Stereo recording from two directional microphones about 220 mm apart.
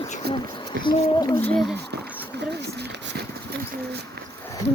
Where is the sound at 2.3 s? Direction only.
50° right (ahead or behind).